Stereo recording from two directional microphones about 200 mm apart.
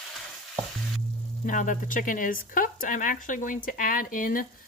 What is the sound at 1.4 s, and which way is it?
Speech, 40° left (ahead or behind).